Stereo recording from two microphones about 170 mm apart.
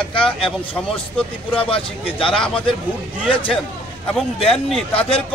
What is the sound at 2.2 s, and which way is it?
Speech, 5° left (ahead or behind).